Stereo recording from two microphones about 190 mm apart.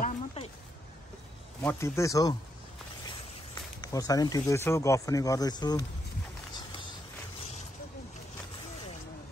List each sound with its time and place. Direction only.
0.0 s a sound: 30° left (ahead or behind)
1.6 s speech: 10° left (ahead or behind)
3.9 s speech: 20° left (ahead or behind)